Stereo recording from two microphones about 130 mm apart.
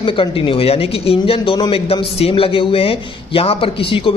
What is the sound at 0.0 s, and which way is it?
Speech, 40° left (ahead or behind).